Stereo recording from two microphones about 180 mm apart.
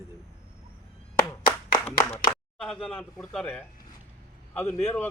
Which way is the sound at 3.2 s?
5° left (ahead or behind).